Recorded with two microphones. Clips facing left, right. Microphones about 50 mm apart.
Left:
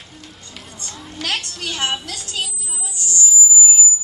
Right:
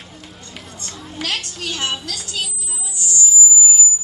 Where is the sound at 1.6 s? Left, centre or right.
Left.